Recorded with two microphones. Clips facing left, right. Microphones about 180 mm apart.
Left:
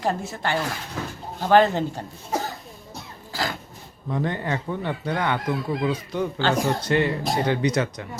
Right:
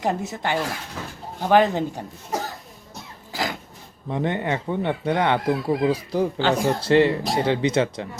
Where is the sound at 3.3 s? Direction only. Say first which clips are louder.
Right 1 dB; 20° right (ahead or behind).